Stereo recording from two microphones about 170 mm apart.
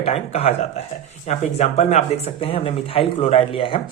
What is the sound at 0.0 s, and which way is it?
Speech, 40° left (ahead or behind).